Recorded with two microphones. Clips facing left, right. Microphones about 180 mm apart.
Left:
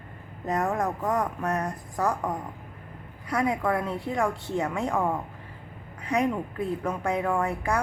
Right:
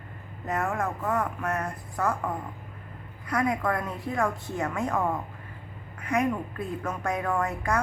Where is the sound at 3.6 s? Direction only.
10° left (ahead or behind).